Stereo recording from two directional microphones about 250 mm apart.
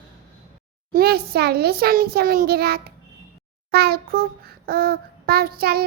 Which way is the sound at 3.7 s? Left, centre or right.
Right.